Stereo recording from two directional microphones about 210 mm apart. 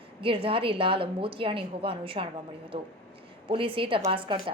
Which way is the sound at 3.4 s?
25° right (ahead or behind).